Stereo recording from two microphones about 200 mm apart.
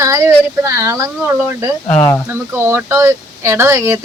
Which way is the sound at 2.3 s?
10° right (ahead or behind).